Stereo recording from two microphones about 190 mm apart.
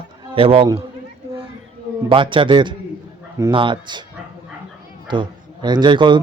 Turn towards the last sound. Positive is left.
turn(degrees=-25)  # may be behind; listen again after turning